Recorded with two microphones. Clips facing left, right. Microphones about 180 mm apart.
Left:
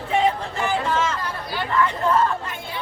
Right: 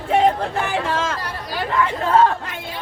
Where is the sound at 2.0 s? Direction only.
75° right (ahead or behind).